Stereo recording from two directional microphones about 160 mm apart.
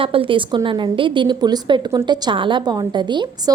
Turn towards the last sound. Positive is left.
turn(degrees=-30)  # may be behind; listen again after turning